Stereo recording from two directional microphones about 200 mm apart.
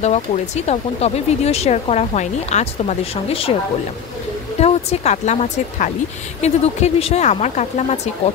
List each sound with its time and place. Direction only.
0.0 s speech: 35° left (ahead or behind)
4.6 s speech: 30° left (ahead or behind)